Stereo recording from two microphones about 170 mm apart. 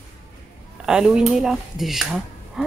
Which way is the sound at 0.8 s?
5° right (ahead or behind).